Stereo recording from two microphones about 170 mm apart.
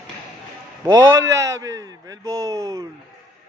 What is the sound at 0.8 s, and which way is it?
A man's voice, 20° right (ahead or behind).